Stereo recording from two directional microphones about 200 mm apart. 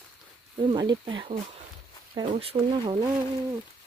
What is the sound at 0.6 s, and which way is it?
Speech, 20° right (ahead or behind).